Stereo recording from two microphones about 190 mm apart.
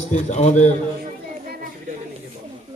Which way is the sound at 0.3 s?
40° left (ahead or behind).